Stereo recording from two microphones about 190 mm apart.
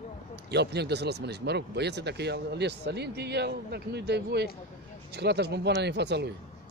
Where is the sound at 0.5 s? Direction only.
60° right (ahead or behind).